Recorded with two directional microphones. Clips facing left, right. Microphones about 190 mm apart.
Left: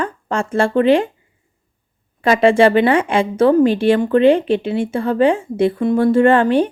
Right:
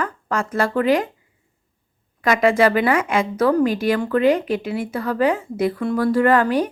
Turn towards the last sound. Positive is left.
turn(degrees=25)  # may be behind; listen again after turning